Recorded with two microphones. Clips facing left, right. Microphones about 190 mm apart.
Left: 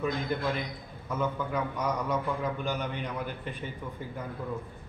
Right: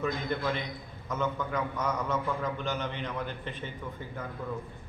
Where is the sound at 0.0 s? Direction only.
5° left (ahead or behind).